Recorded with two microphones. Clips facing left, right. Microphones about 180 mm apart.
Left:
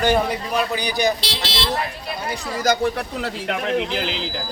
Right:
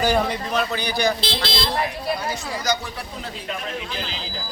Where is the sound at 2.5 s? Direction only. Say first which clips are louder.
Left 9 dB; 55° left (ahead or behind); by 4.2 s 75° left (ahead or behind).